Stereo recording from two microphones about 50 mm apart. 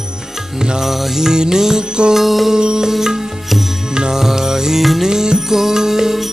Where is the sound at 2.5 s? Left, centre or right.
Centre.